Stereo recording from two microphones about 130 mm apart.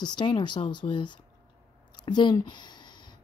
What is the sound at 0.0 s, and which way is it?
Speech, 35° left (ahead or behind).